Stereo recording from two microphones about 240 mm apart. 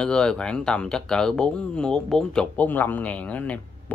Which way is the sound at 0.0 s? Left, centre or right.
Centre.